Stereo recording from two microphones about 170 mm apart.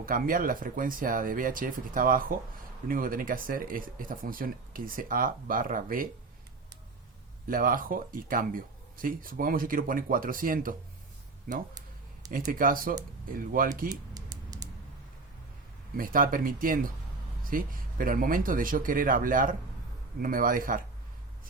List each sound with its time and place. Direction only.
0.0 s speech: 55° right (ahead or behind)
7.4 s speech: 55° right (ahead or behind)
12.5 s speech: 55° right (ahead or behind)
13.9 s typing: 20° right (ahead or behind)
16.0 s speech: 55° right (ahead or behind)